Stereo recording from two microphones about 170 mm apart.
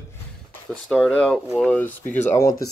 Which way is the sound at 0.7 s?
5° left (ahead or behind).